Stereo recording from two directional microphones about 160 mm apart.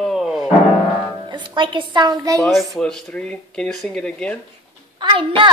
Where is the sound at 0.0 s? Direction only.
Centre (ahead or behind).